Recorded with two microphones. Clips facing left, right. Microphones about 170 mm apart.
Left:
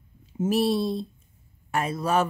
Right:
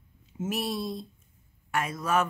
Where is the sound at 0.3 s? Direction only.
30° left (ahead or behind).